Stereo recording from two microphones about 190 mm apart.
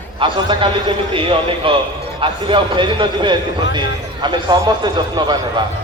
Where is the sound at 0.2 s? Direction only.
25° right (ahead or behind).